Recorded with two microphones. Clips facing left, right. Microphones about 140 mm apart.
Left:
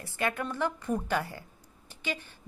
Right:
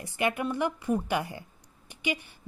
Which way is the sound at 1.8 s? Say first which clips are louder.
Right 4 dB; 15° right (ahead or behind).